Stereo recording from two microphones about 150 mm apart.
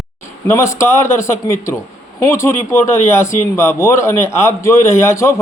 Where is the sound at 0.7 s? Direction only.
20° left (ahead or behind).